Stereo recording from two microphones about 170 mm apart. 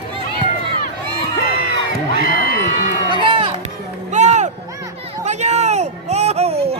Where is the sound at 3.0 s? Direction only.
30° right (ahead or behind).